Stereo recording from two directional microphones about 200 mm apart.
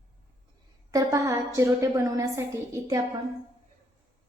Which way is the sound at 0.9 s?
15° right (ahead or behind).